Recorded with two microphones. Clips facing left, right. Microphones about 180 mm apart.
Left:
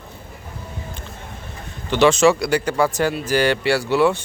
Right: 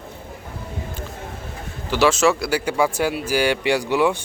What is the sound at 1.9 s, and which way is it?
A man's voice, 5° right (ahead or behind).